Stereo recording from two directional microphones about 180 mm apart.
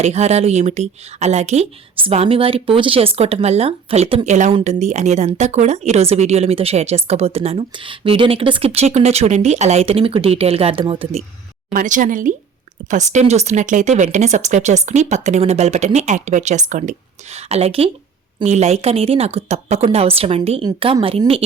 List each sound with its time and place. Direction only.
0.0 s a woman's voice: 35° right (ahead or behind)
11.7 s a woman's voice: 45° right (ahead or behind); by 21.4 s 30° right (ahead or behind)